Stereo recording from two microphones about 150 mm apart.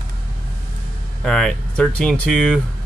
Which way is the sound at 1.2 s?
5° left (ahead or behind).